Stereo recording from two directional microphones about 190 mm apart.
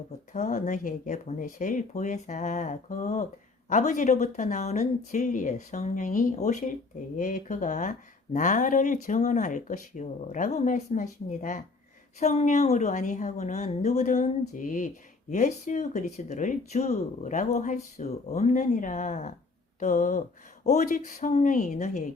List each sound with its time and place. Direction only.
0.3 s speech: 40° left (ahead or behind)